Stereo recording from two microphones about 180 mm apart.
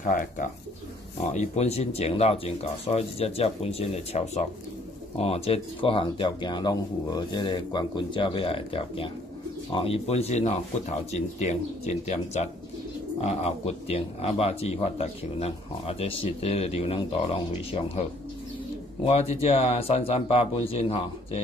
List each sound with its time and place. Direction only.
0.0 s speech: 45° left (ahead or behind)
19.0 s speech: 35° left (ahead or behind)